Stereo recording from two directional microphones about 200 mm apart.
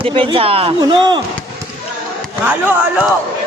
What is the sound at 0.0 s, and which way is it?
Speech, 25° right (ahead or behind).